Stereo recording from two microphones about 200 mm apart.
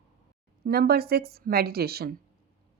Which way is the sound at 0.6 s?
50° right (ahead or behind).